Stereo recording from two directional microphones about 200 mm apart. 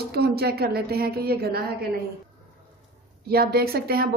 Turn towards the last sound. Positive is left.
turn(degrees=-50)  # may be behind; listen again after turning